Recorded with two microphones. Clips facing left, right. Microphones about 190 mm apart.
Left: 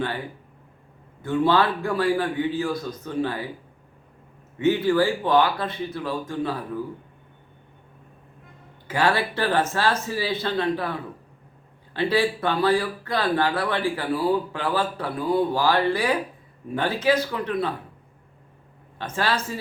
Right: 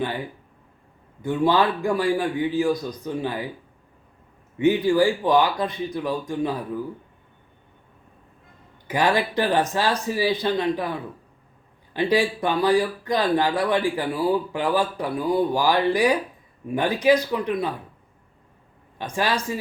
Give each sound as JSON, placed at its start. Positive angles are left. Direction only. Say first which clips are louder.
{"t": 1.2, "sound": "speech", "louder": "even", "side_deg": -15}
{"t": 4.5, "sound": "speech", "louder": "right 1 dB", "side_deg": -15}
{"t": 8.9, "sound": "speech", "louder": "right 1 dB", "side_deg": -15}
{"t": 11.9, "sound": "speech", "louder": "right 1 dB", "side_deg": -15}
{"t": 18.9, "sound": "speech", "louder": "right 1 dB", "side_deg": -15}